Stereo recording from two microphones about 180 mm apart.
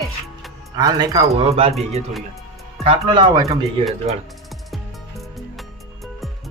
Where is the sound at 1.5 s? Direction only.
30° right (ahead or behind).